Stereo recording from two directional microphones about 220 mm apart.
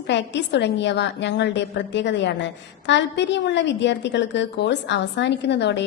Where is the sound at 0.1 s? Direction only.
50° left (ahead or behind).